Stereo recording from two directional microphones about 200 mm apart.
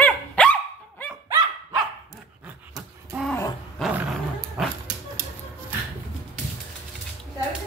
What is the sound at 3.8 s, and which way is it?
Dog, 5° right (ahead or behind).